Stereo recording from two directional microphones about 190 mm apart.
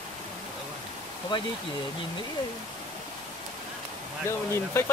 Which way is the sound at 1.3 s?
25° left (ahead or behind).